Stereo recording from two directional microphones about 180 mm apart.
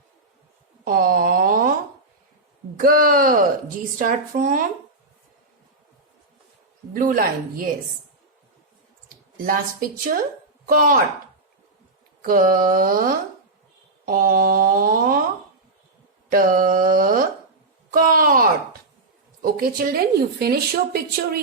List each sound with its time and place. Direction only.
0.9 s a sound: 55° right (ahead or behind)
2.7 s speech: 55° right (ahead or behind)
6.9 s speech: 50° right (ahead or behind)
9.4 s speech: 50° right (ahead or behind)
12.2 s speech: 50° right (ahead or behind)
16.3 s speech: 50° right (ahead or behind)